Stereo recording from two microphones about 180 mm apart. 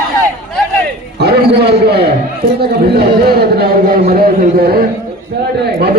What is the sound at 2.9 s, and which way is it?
A man's voice, 60° right (ahead or behind).